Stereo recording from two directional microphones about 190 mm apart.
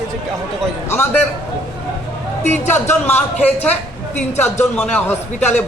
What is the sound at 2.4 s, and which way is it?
Speech, 10° left (ahead or behind).